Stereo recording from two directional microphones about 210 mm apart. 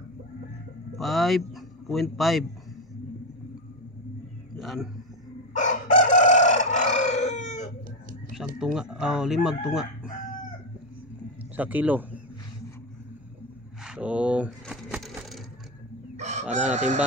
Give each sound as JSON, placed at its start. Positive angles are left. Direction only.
{"t": 0.9, "sound": "a man's voice", "side_deg": 0}
{"t": 4.6, "sound": "a sound", "side_deg": 0}
{"t": 5.5, "sound": "chicken", "side_deg": 35}
{"t": 8.5, "sound": "speech", "side_deg": -5}
{"t": 11.5, "sound": "speech", "side_deg": -10}
{"t": 13.8, "sound": "coin", "side_deg": -5}
{"t": 16.2, "sound": "chicken", "side_deg": -35}